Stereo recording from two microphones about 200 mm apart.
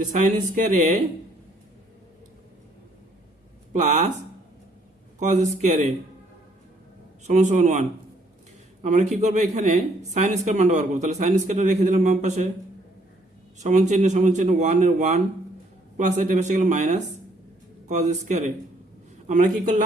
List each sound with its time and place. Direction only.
0.0 s speech: 40° right (ahead or behind)
3.7 s speech: 35° right (ahead or behind)
5.2 s speech: 35° right (ahead or behind)
7.3 s speech: 35° right (ahead or behind)
13.6 s speech: 35° right (ahead or behind)